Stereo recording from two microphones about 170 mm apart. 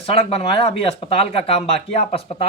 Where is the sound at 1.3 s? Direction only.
35° left (ahead or behind).